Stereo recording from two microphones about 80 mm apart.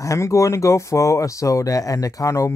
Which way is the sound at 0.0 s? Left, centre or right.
Left.